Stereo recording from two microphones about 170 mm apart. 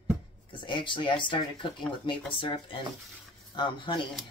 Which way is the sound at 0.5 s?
30° left (ahead or behind).